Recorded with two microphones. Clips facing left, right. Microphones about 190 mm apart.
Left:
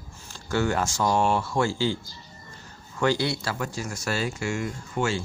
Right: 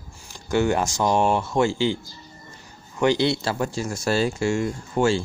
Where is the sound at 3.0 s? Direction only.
20° right (ahead or behind).